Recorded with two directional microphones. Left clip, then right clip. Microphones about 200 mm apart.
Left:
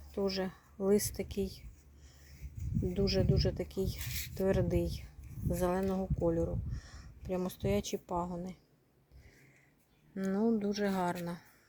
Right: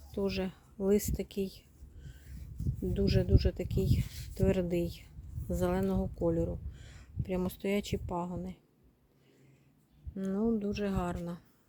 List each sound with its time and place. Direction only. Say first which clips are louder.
0.1 s speech: even; 15° right (ahead or behind)
2.9 s speech: even; 15° right (ahead or behind)
10.2 s speech: even; 5° right (ahead or behind)